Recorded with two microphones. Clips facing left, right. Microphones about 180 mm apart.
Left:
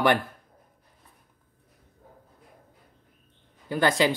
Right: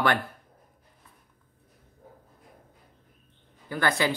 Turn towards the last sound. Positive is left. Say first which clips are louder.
# left 3 dB
turn(degrees=15)  # may be behind; listen again after turning